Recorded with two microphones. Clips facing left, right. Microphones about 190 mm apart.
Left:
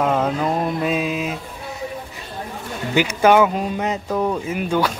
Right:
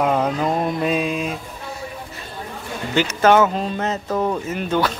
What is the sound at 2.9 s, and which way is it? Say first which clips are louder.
Speech: left 1 dB; 10° left (ahead or behind).